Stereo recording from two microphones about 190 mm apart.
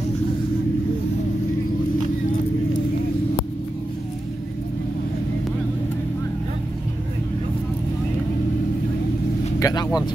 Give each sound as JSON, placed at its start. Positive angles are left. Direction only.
{"t": 9.6, "sound": "speech", "side_deg": 20}